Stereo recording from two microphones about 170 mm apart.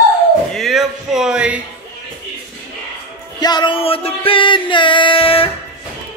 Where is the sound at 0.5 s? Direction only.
Centre (ahead or behind).